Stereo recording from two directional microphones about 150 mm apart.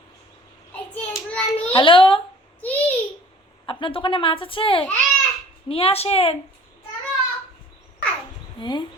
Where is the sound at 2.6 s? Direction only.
10° left (ahead or behind).